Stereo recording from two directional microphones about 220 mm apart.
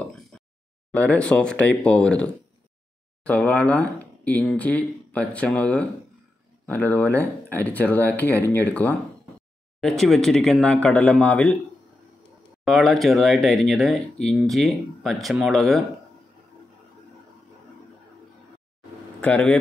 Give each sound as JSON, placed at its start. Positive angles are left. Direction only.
{"t": 0.9, "sound": "speech", "side_deg": 5}
{"t": 12.6, "sound": "speech", "side_deg": 0}
{"t": 19.2, "sound": "speech", "side_deg": 5}